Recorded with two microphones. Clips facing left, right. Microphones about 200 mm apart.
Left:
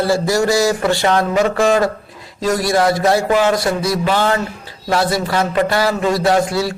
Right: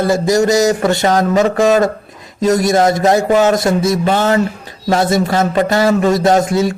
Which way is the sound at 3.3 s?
45° right (ahead or behind).